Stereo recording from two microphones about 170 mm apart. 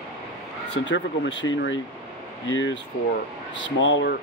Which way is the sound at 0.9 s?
90° left.